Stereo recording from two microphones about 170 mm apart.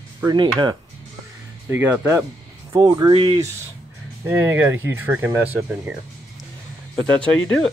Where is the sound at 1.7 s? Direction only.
15° right (ahead or behind); by 3.4 s 30° right (ahead or behind).